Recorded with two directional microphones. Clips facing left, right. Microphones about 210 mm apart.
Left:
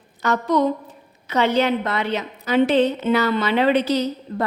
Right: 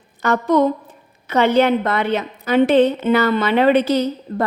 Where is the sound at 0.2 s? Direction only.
50° right (ahead or behind).